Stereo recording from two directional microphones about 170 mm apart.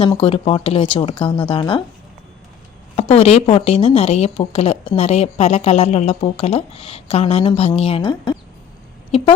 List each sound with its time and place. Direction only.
0.0 s a woman's voice: 30° left (ahead or behind)
2.9 s a woman's voice: 35° left (ahead or behind)